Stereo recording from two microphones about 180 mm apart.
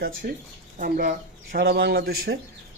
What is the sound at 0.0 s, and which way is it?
Speech, 50° right (ahead or behind).